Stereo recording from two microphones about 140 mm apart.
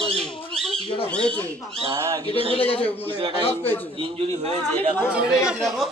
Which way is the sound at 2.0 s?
20° right (ahead or behind).